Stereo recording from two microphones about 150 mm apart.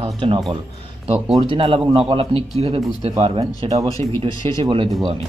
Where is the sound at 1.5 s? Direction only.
35° right (ahead or behind).